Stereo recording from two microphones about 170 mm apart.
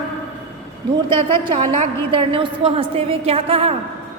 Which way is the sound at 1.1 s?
30° right (ahead or behind).